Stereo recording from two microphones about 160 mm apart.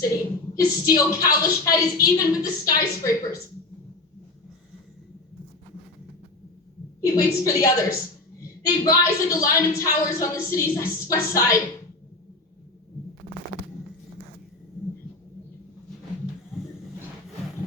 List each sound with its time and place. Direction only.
0.0 s a woman's voice: 20° left (ahead or behind)
7.0 s a woman's voice: 20° left (ahead or behind)
8.9 s a woman's voice: 20° left (ahead or behind)